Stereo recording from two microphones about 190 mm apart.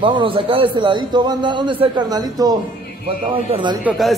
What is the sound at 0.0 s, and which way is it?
A man's voice, 25° right (ahead or behind).